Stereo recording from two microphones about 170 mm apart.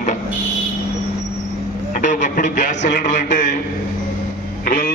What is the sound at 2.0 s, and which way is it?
Speech, 50° left (ahead or behind).